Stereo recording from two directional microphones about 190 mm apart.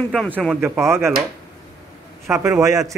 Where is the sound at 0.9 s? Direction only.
15° right (ahead or behind).